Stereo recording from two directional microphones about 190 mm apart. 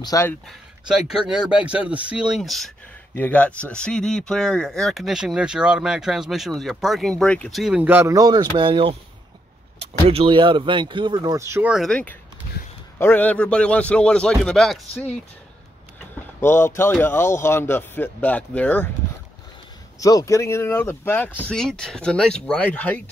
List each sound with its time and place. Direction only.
0.0 s speech: 15° left (ahead or behind)
0.5 s speech: 5° right (ahead or behind)
11.7 s speech: centre (ahead or behind)
16.3 s speech: 10° left (ahead or behind)
20.0 s speech: 20° left (ahead or behind)